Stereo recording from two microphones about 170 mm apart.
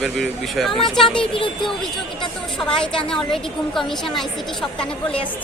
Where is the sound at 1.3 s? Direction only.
30° left (ahead or behind).